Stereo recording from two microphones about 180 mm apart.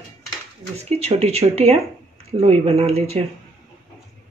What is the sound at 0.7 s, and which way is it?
Speech, 35° right (ahead or behind).